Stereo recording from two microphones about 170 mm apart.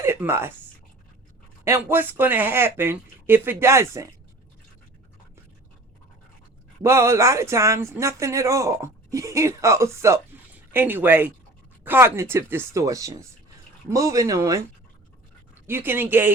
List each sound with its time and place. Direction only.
0.0 s a woman's voice: 15° right (ahead or behind)
1.6 s speech: 15° right (ahead or behind)
6.8 s speech: 15° right (ahead or behind)
15.6 s speech: 10° right (ahead or behind)